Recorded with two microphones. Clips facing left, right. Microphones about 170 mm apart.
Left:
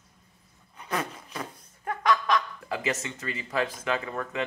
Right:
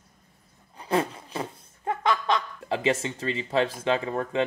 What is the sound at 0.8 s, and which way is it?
Laughter, 30° right (ahead or behind).